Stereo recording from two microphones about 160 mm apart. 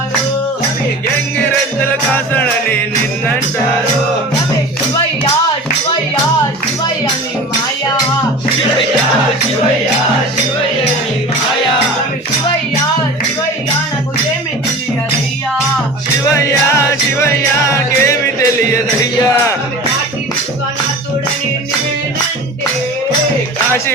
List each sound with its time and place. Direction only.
2.1 s music: 10° left (ahead or behind)
16.3 s music: 20° left (ahead or behind)